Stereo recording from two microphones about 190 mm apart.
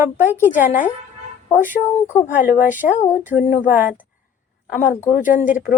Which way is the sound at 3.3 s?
45° left (ahead or behind).